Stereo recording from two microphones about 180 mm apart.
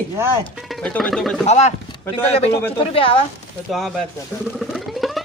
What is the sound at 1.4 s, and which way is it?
Speech, 40° left (ahead or behind).